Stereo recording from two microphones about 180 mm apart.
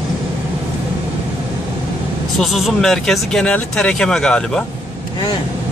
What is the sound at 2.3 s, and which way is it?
Speech, centre (ahead or behind).